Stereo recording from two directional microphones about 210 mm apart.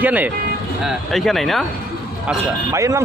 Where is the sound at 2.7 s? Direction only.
15° right (ahead or behind).